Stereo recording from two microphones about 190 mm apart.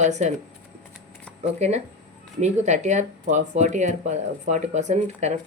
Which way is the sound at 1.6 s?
35° right (ahead or behind).